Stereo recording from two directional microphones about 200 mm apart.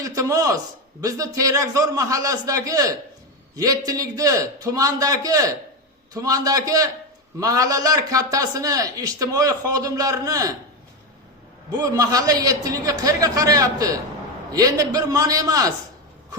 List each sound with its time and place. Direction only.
0.0 s a sound: 15° right (ahead or behind)
1.0 s a man's voice: 15° right (ahead or behind)
11.7 s a man's voice: 15° right (ahead or behind)